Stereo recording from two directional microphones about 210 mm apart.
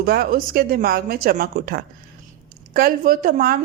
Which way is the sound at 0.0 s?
45° right (ahead or behind).